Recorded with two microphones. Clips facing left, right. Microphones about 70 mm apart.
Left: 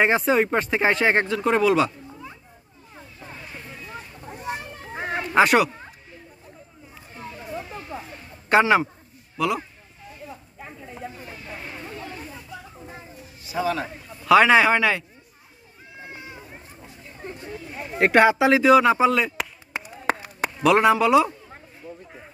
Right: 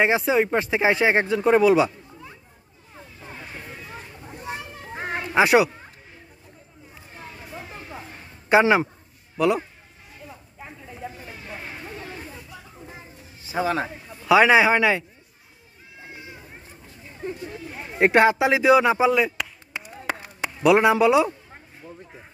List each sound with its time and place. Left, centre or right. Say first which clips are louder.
0.0 s speech: even; centre
4.5 s children playing: left 2 dB; centre
8.5 s speech: even; centre
13.5 s a man's voice: right 1 dB; right
14.2 s speech: even; centre
17.9 s speech: even; centre
18.6 s speech: even; centre
20.6 s speech: right 1 dB; centre